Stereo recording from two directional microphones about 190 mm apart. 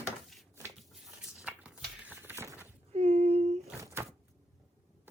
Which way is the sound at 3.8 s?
15° right (ahead or behind).